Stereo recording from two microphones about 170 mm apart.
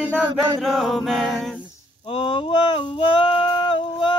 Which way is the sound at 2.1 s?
30° left (ahead or behind).